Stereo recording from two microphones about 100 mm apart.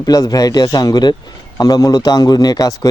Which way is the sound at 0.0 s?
40° left (ahead or behind).